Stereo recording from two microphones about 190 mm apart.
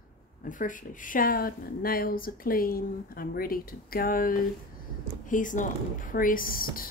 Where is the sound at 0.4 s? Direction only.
45° left (ahead or behind).